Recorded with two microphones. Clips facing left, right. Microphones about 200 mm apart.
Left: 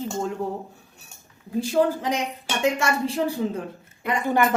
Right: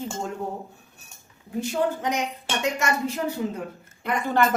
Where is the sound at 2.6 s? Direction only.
30° left (ahead or behind).